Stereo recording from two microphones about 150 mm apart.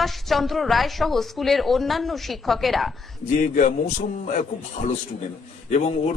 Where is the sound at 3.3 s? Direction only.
55° left (ahead or behind).